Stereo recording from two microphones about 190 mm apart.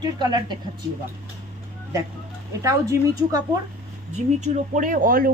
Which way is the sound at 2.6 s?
15° right (ahead or behind).